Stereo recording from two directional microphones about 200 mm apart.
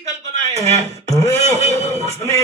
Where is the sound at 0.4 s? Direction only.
15° left (ahead or behind).